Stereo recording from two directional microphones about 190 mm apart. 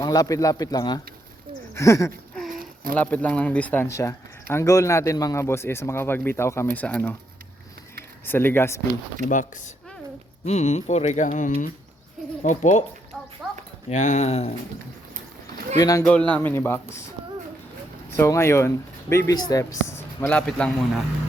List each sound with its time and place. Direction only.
0.0 s a man's voice: 20° left (ahead or behind)
1.7 s a sound: 15° left (ahead or behind)
2.3 s a sound: centre (ahead or behind)
2.6 s a sound: 50° right (ahead or behind)
3.0 s speech: 10° left (ahead or behind)
8.2 s speech: 10° left (ahead or behind)
9.3 s speech: 40° left (ahead or behind)
13.4 s dog: centre (ahead or behind)
13.9 s speech: 40° left (ahead or behind)
15.8 s a man's voice: 20° left (ahead or behind)
16.0 s speech: 5° left (ahead or behind)
18.2 s speech: 15° left (ahead or behind)